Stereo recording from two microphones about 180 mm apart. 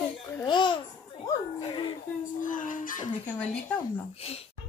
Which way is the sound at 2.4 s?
45° left (ahead or behind).